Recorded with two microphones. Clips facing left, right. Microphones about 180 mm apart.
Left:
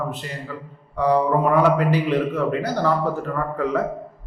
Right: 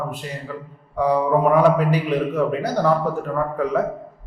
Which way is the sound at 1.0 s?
10° right (ahead or behind).